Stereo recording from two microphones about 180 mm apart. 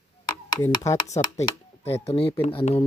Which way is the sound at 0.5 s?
15° left (ahead or behind).